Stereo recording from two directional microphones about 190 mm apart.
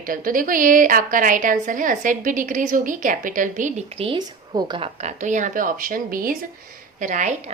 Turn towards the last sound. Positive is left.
turn(degrees=-40)  # may be behind; listen again after turning